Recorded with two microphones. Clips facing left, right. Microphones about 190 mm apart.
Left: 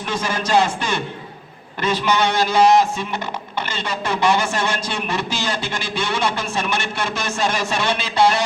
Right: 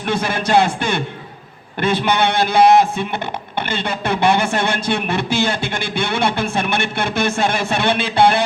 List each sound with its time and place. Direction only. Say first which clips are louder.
0.1 s speech: right 3 dB; 60° right (ahead or behind)